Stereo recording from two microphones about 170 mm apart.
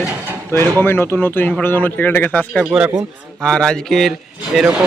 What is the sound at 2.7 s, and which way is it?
Speech, 10° right (ahead or behind).